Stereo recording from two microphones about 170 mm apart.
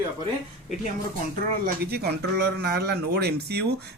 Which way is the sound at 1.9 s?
70° right (ahead or behind).